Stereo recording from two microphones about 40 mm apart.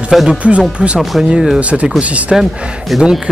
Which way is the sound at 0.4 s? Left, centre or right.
Right.